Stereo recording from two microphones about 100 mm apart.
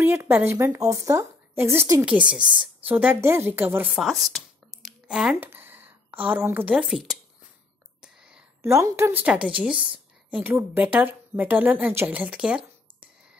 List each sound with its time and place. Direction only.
0.0 s a woman's voice: 25° right (ahead or behind)
2.0 s a woman's voice: 10° right (ahead or behind)
3.9 s a sound: centre (ahead or behind)
5.0 s speech: 10° right (ahead or behind)
5.4 s speech: 20° right (ahead or behind)
6.9 s speech: centre (ahead or behind)
8.0 s whispering: 10° right (ahead or behind)
8.6 s a woman's voice: 30° right (ahead or behind)
9.2 s a woman's voice: 10° right (ahead or behind)